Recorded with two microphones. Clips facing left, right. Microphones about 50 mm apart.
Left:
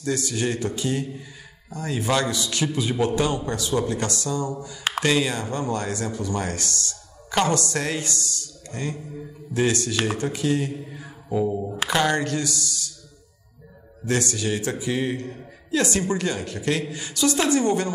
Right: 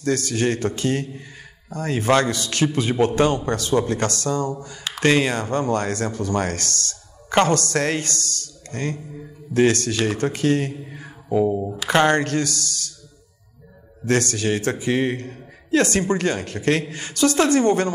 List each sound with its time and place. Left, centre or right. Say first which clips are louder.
0.0 s a man's voice: right 4 dB; right
11.1 s mantra: right 4 dB; right
11.9 s speech: right 5 dB; right
14.0 s a man's voice: right 4 dB; right